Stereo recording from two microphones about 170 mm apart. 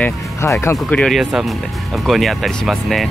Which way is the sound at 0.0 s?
15° left (ahead or behind).